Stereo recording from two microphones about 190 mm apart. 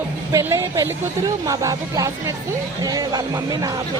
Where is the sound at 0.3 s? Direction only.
15° right (ahead or behind).